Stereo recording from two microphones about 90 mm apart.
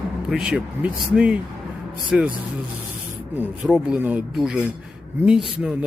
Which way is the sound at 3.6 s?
10° right (ahead or behind).